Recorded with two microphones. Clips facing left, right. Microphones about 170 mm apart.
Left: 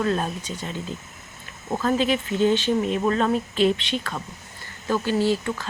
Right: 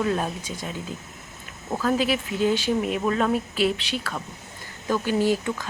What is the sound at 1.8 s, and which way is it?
A woman's voice, 5° right (ahead or behind).